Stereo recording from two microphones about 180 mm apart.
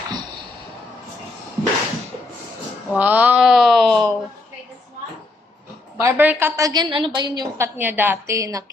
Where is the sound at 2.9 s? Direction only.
10° right (ahead or behind).